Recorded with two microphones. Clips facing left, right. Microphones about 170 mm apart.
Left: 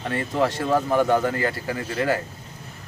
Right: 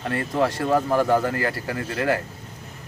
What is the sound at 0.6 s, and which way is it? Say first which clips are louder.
Speech: even; centre (ahead or behind).